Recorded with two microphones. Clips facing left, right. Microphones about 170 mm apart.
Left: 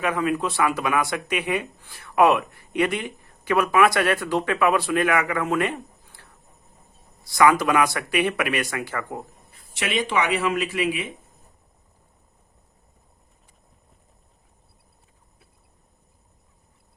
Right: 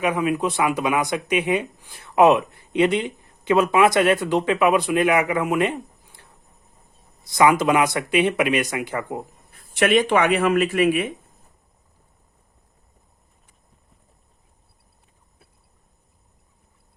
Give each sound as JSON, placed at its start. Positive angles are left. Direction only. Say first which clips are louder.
{"t": 0.0, "sound": "speech", "louder": "right 2 dB", "side_deg": -15}
{"t": 7.3, "sound": "speech", "louder": "right 1 dB", "side_deg": -20}
{"t": 9.6, "sound": "speech", "louder": "right 8 dB", "side_deg": -55}